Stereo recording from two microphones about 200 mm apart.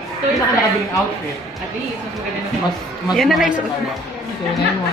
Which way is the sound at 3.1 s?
Centre (ahead or behind).